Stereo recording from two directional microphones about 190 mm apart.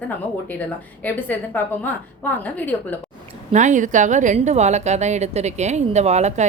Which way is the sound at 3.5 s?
40° right (ahead or behind).